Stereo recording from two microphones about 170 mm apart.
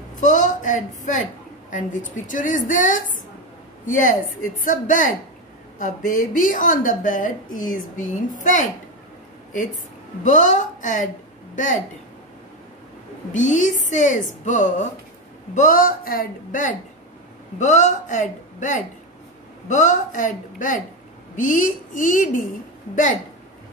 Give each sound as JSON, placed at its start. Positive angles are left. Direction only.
{"t": 0.2, "sound": "speech", "side_deg": 45}
{"t": 10.2, "sound": "a woman's voice", "side_deg": 45}
{"t": 13.3, "sound": "speech", "side_deg": 45}